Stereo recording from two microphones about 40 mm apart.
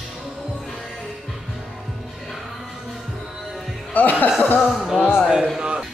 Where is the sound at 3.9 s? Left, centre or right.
Left.